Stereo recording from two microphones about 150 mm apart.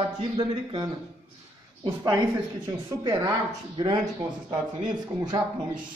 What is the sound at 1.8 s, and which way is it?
A man's voice, 30° right (ahead or behind).